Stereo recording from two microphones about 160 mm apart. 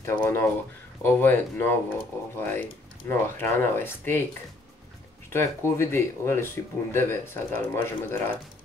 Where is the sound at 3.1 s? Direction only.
15° left (ahead or behind).